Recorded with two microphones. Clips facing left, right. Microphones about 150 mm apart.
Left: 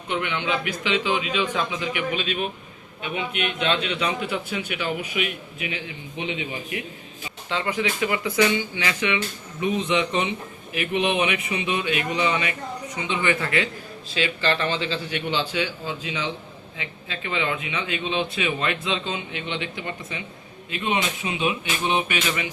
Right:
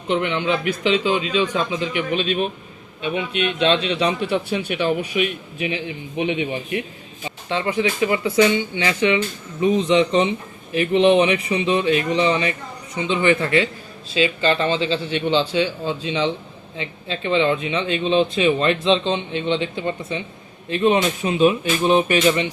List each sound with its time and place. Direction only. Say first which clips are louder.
0.1 s a man's voice: right 5 dB; 30° right (ahead or behind)